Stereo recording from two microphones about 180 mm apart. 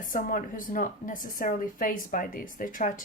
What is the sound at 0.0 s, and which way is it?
Speech, 50° left (ahead or behind).